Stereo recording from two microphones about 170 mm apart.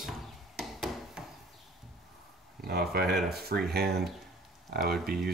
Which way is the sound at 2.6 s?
70° right (ahead or behind).